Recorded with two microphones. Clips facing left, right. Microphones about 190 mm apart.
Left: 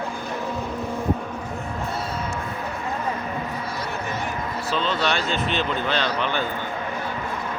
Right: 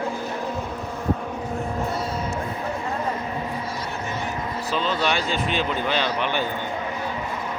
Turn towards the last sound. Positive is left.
turn(degrees=-10)  # may be behind; listen again after turning